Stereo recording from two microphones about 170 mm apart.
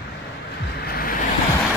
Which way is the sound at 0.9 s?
60° left (ahead or behind).